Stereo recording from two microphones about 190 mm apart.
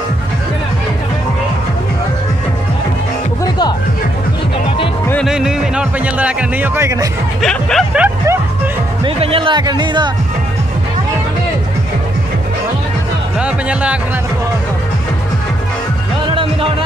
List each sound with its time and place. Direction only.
5.2 s a man's voice: 5° right (ahead or behind)
7.4 s snicker: centre (ahead or behind)
9.0 s speech: 30° right (ahead or behind)
13.4 s speech: 5° right (ahead or behind)